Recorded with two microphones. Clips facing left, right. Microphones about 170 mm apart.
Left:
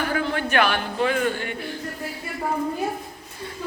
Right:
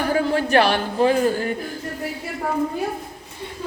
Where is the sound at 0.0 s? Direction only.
35° right (ahead or behind).